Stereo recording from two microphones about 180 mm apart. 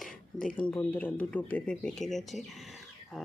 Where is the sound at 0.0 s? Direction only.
5° left (ahead or behind).